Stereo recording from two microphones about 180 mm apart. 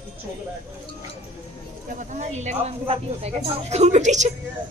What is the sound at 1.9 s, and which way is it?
Speech, 40° right (ahead or behind).